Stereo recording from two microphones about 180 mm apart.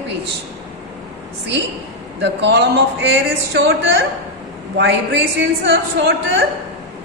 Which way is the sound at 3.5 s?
90° right.